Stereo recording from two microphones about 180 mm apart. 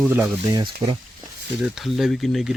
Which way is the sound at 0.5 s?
25° right (ahead or behind).